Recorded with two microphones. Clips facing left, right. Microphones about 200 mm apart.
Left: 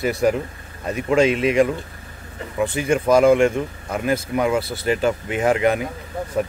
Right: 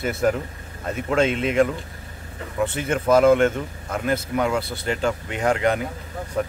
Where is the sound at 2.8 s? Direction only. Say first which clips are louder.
Left 2 dB; 10° left (ahead or behind).